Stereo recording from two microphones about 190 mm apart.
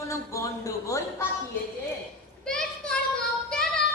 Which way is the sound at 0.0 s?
15° left (ahead or behind).